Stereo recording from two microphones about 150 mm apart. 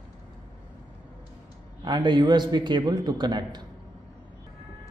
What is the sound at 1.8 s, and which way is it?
A man's voice, 30° right (ahead or behind).